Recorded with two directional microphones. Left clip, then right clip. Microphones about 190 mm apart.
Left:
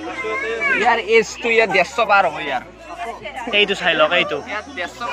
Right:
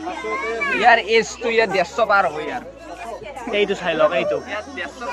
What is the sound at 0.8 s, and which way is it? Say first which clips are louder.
Speech: right 3 dB; 5° left (ahead or behind).